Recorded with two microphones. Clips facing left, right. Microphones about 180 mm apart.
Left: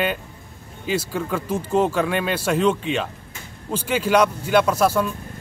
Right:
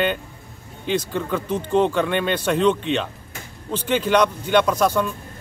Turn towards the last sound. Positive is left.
turn(degrees=5)  # may be behind; listen again after turning